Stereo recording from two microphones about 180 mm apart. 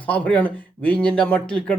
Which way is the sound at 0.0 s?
10° left (ahead or behind).